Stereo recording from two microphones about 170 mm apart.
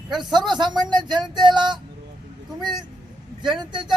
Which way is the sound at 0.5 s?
25° right (ahead or behind).